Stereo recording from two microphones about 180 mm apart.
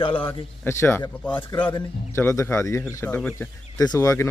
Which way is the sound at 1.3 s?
30° left (ahead or behind).